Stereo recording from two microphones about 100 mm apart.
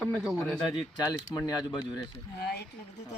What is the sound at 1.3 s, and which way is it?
Speech, 25° left (ahead or behind).